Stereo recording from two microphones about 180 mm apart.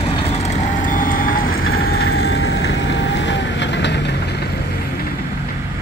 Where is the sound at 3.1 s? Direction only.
80° left.